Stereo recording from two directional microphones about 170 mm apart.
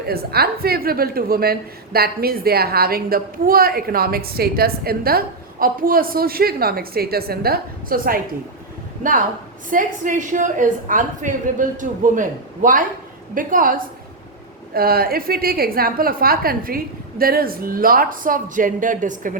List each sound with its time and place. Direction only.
0.0 s a woman's voice: 65° right (ahead or behind)
9.6 s a woman's voice: 50° right (ahead or behind)